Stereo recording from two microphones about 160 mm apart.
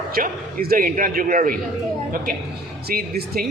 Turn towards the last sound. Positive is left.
turn(degrees=-70)  # may be behind; listen again after turning